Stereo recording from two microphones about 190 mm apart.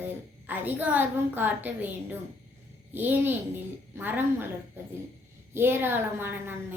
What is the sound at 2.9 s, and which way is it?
A woman's voice, 10° right (ahead or behind).